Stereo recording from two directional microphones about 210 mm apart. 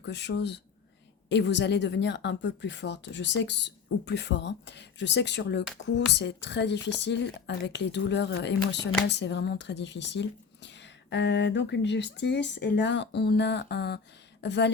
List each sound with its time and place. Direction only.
0.0 s speech: 55° left (ahead or behind)